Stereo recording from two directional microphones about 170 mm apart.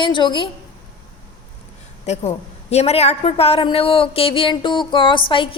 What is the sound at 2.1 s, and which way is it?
A woman's voice, 40° left (ahead or behind).